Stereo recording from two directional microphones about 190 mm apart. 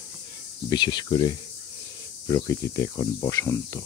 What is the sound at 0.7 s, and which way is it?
Speech, 25° left (ahead or behind).